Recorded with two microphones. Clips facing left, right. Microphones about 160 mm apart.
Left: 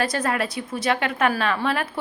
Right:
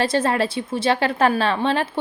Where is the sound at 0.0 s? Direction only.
30° right (ahead or behind).